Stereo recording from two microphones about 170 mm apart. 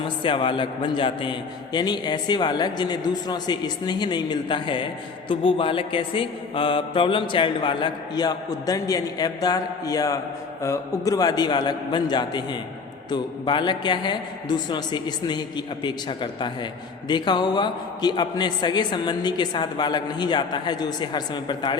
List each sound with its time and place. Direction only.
0.2 s mantra: 30° left (ahead or behind)